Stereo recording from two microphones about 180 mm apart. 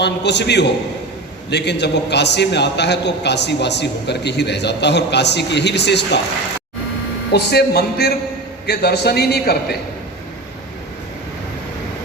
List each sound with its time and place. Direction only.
0.0 s a man's voice: 70° left (ahead or behind)
7.3 s a man's voice: 65° left (ahead or behind)